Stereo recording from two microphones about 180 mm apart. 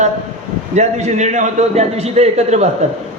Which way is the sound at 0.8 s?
40° right (ahead or behind).